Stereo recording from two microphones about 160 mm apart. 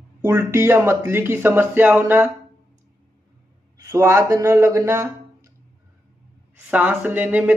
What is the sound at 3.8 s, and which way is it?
Speech, 15° right (ahead or behind).